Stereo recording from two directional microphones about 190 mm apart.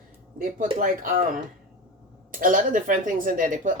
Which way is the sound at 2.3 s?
45° right (ahead or behind).